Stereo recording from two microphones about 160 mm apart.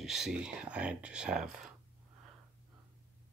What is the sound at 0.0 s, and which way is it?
Speech, centre (ahead or behind).